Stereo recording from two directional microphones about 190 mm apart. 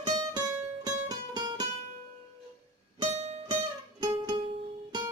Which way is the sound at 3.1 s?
35° right (ahead or behind).